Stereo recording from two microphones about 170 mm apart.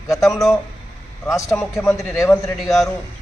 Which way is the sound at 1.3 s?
20° left (ahead or behind).